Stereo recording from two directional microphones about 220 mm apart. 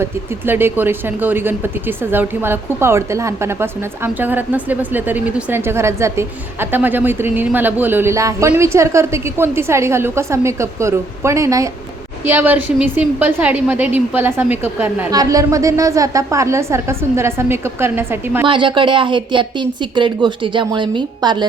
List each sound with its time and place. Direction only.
0.0 s speech: 10° right (ahead or behind)
18.4 s speech: 20° right (ahead or behind)